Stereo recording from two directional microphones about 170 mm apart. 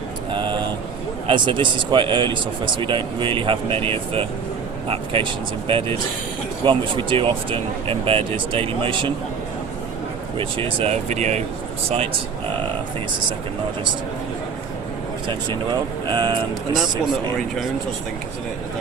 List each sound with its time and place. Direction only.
0.3 s a sound: 30° right (ahead or behind)
1.3 s speech: 30° right (ahead or behind)
10.3 s speech: 30° right (ahead or behind)
15.3 s speech: 25° right (ahead or behind)